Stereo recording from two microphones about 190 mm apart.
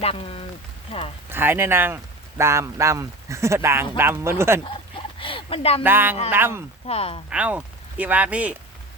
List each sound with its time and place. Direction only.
0.0 s speech: 30° left (ahead or behind)
1.3 s speech: 10° right (ahead or behind)
4.6 s a sound: 25° left (ahead or behind)
5.8 s speech: 10° right (ahead or behind)
6.8 s speech: 30° left (ahead or behind)
7.3 s speech: 5° right (ahead or behind)